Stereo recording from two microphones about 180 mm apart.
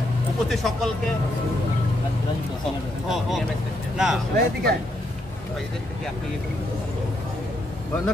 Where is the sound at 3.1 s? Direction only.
Centre (ahead or behind).